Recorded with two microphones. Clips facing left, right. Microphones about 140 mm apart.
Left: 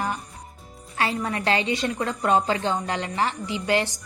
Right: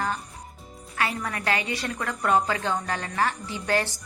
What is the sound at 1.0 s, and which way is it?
A woman's voice, 25° left (ahead or behind).